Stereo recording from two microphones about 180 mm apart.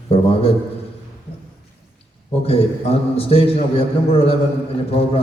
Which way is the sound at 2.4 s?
35° left (ahead or behind).